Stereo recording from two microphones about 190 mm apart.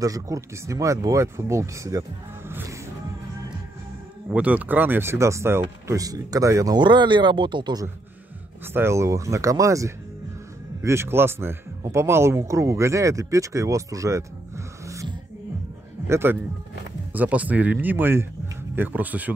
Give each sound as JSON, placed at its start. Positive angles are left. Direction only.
{"t": 0.0, "sound": "speech", "side_deg": -15}
{"t": 4.3, "sound": "speech", "side_deg": -5}
{"t": 14.9, "sound": "music", "side_deg": -15}
{"t": 16.1, "sound": "speech", "side_deg": -10}